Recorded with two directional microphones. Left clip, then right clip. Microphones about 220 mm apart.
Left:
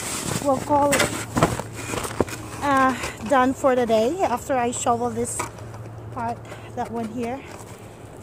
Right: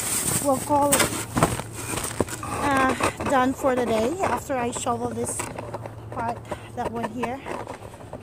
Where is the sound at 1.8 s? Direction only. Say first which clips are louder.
Left 3 dB; 5° right (ahead or behind).